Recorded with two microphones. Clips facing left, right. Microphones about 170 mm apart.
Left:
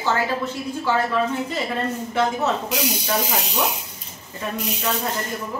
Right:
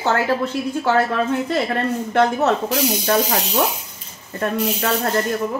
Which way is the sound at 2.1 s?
60° right (ahead or behind).